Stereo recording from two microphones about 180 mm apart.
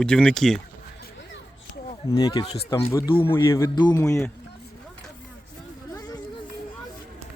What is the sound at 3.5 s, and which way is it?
Speech, 15° left (ahead or behind).